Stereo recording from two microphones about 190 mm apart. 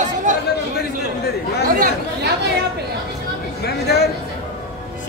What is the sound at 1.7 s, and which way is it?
Chatter, 60° right (ahead or behind).